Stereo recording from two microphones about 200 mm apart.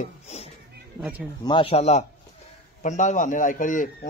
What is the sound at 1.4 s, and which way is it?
A man's voice, 25° left (ahead or behind).